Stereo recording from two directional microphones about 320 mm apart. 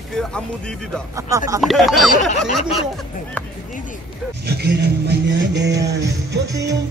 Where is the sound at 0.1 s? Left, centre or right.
Centre.